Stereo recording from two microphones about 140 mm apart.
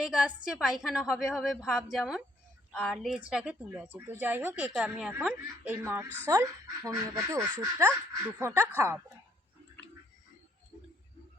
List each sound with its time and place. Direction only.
0.0 s a woman's voice: 5° right (ahead or behind)